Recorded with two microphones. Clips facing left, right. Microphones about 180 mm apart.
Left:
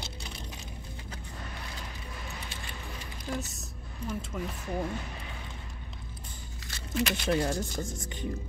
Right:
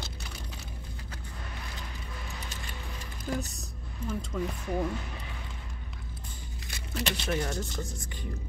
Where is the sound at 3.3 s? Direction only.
Centre (ahead or behind).